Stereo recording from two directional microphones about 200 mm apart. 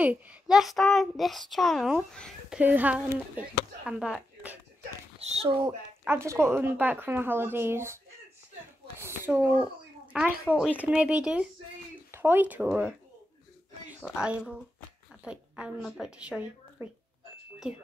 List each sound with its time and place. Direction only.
0.0 s a child's voice: 5° right (ahead or behind)
5.2 s speech: 30° right (ahead or behind)
6.0 s speech: 10° right (ahead or behind)
9.0 s a child's voice: 10° right (ahead or behind)